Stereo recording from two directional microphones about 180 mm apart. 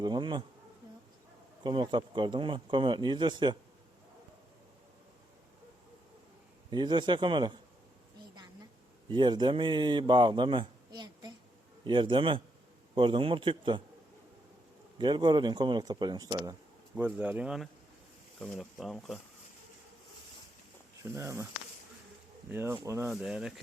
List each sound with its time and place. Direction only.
0.0 s speech: 25° right (ahead or behind)
1.6 s speech: 25° right (ahead or behind)
6.7 s speech: 25° right (ahead or behind)
9.0 s speech: 25° right (ahead or behind)
14.9 s speech: 25° right (ahead or behind)
16.9 s speech: 10° right (ahead or behind)
21.0 s speech: 15° right (ahead or behind)
22.5 s speech: 15° right (ahead or behind)
23.1 s speech: 5° right (ahead or behind)